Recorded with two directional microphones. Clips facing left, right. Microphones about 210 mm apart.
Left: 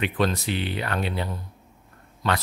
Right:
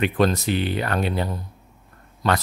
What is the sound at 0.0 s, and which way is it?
Speech, 45° right (ahead or behind).